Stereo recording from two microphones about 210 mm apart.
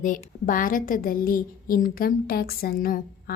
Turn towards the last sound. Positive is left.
turn(degrees=45)  # may be behind; listen again after turning